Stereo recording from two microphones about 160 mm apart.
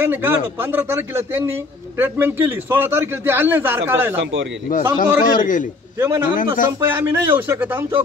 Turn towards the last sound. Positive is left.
turn(degrees=-10)  # may be behind; listen again after turning